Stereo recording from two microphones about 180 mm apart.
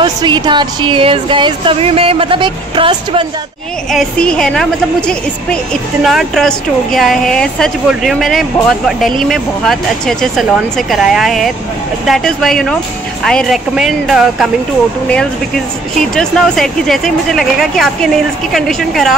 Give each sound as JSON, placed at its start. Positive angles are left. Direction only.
{"t": 0.0, "sound": "speech", "side_deg": -25}
{"t": 3.9, "sound": "a woman's voice", "side_deg": 5}
{"t": 16.2, "sound": "a woman's voice", "side_deg": 5}